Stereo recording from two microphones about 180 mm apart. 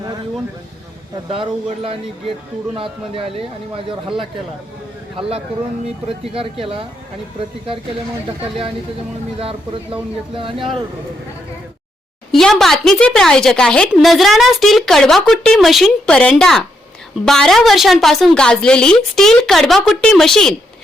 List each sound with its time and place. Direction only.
1.3 s speech: 30° right (ahead or behind)
6.1 s speech: 30° right (ahead or behind)
9.4 s speech: 30° right (ahead or behind)
12.3 s speech: centre (ahead or behind)